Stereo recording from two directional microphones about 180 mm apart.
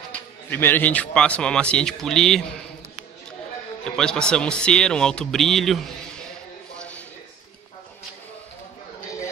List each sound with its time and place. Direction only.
0.1 s speech: 10° left (ahead or behind)
3.8 s speech: 5° left (ahead or behind)